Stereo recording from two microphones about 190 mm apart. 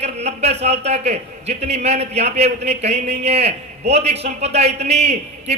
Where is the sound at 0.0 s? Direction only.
35° right (ahead or behind).